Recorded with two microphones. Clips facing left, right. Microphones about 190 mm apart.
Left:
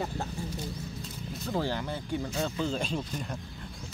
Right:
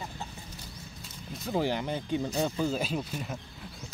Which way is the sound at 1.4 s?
15° right (ahead or behind).